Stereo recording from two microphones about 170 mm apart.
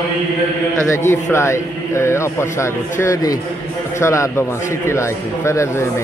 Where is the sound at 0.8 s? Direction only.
15° left (ahead or behind).